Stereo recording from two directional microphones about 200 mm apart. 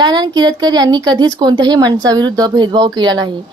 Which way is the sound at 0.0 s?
20° right (ahead or behind).